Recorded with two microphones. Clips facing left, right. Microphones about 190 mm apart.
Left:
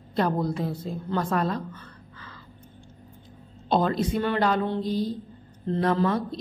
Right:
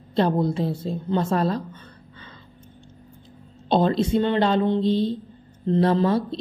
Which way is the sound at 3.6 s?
25° right (ahead or behind).